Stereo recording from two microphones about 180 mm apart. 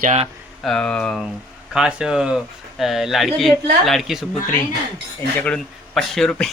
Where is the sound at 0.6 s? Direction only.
5° left (ahead or behind).